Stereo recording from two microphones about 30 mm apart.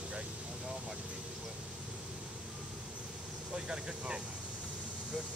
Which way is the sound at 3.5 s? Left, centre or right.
Right.